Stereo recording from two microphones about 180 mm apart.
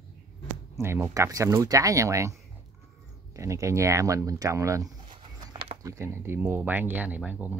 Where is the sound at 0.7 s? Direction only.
15° right (ahead or behind).